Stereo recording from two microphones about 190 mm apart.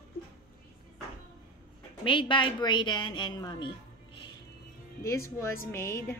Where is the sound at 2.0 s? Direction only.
25° left (ahead or behind).